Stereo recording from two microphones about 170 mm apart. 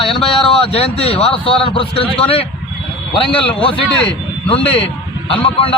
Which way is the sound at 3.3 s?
30° left (ahead or behind).